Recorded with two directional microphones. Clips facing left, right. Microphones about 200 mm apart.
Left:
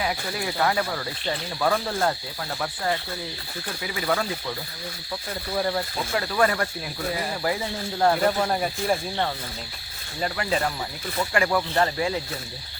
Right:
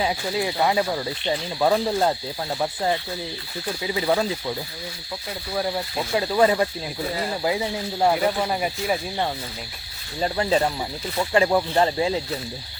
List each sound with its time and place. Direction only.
0.0 s speech: 20° right (ahead or behind)
5.5 s speech: 5° right (ahead or behind)
6.1 s speech: 20° right (ahead or behind)
10.2 s speech: 30° right (ahead or behind)